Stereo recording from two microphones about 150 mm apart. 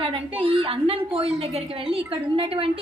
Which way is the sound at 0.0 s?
40° right (ahead or behind).